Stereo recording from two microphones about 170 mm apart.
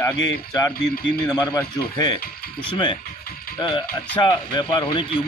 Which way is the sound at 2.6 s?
30° left (ahead or behind).